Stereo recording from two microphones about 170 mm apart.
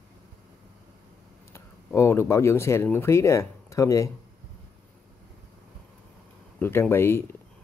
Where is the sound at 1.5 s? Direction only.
15° left (ahead or behind).